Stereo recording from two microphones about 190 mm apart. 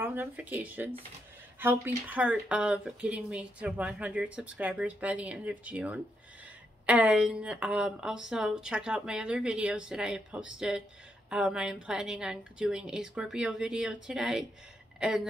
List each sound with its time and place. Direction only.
0.0 s speech: 10° right (ahead or behind)